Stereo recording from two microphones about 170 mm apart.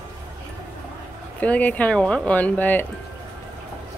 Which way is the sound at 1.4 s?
10° left (ahead or behind).